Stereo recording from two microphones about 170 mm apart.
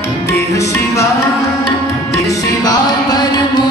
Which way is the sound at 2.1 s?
20° left (ahead or behind).